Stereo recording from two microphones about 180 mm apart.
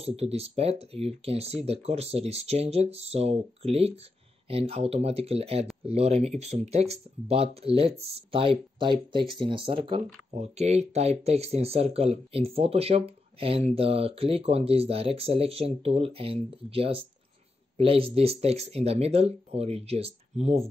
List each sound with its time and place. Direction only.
0.0 s speech: 35° right (ahead or behind)